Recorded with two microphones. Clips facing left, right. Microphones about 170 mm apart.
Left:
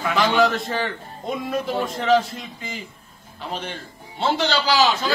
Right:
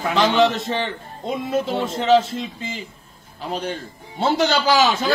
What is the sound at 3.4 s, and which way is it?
A man's voice, 40° right (ahead or behind).